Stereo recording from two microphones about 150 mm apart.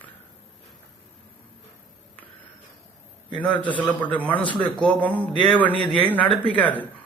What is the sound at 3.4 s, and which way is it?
Speech, 10° left (ahead or behind).